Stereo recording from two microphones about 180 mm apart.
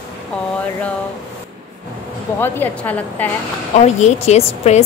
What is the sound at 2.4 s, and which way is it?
Speech, 10° left (ahead or behind).